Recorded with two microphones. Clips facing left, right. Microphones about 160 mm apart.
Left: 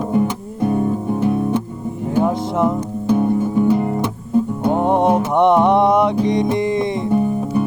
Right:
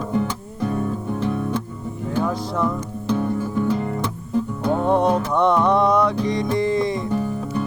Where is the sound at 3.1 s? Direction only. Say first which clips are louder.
Left 6 dB; 20° left (ahead or behind).